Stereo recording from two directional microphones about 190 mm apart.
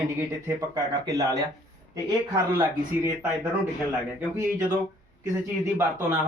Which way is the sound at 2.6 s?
15° right (ahead or behind).